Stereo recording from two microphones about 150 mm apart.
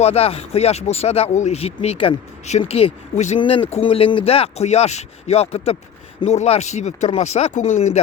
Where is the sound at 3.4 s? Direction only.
35° left (ahead or behind).